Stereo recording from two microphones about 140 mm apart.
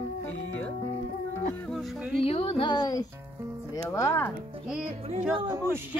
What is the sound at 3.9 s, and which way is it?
Speech, 20° left (ahead or behind).